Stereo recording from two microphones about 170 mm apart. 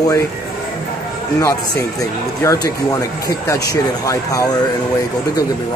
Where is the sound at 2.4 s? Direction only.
20° left (ahead or behind).